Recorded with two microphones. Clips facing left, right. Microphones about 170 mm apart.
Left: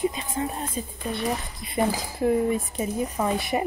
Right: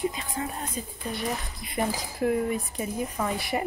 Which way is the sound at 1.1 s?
25° left (ahead or behind).